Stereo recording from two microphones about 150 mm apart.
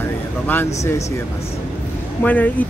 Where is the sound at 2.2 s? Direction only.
10° left (ahead or behind).